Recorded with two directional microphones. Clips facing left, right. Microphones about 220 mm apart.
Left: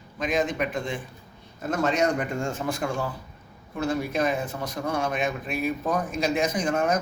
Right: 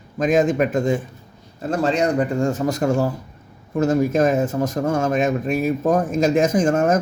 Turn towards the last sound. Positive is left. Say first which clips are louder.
# right 7 dB
turn(degrees=-45)  # may be behind; listen again after turning